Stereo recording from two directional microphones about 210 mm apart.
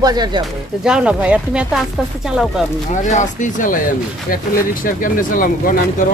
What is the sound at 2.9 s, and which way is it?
Speech, 35° left (ahead or behind).